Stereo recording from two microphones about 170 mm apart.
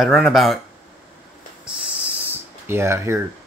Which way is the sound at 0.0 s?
Centre (ahead or behind).